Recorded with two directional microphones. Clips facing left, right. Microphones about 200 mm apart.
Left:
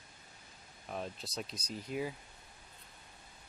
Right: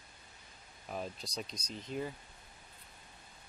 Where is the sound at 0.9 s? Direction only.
Centre (ahead or behind).